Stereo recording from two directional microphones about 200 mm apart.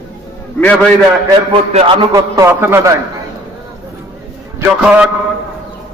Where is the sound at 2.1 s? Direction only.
15° right (ahead or behind).